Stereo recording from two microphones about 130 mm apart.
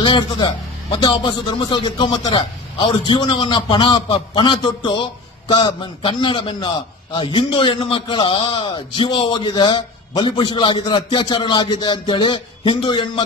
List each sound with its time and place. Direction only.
0.0 s speech: 35° left (ahead or behind)